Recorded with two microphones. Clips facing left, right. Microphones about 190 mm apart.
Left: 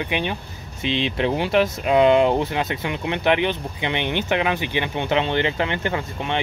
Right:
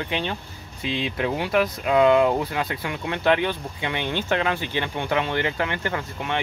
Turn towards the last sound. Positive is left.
turn(degrees=20)  # may be behind; listen again after turning